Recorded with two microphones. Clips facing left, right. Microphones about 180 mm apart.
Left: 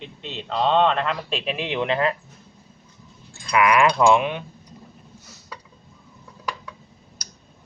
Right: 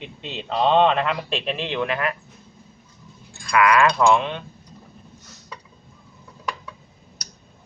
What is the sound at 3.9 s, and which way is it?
Speech, 15° left (ahead or behind).